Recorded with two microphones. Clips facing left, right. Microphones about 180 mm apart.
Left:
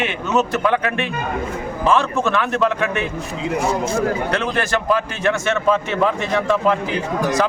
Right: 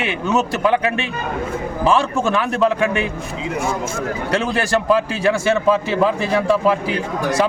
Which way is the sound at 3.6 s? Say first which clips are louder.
Left 3 dB; 35° left (ahead or behind).